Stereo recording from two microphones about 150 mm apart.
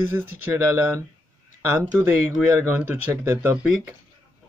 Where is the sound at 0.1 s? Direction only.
15° right (ahead or behind).